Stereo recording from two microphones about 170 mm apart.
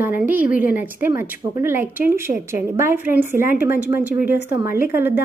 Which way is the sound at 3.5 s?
60° left (ahead or behind).